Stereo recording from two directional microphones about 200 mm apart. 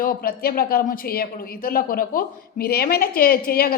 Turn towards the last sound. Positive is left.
turn(degrees=50)  # may be behind; listen again after turning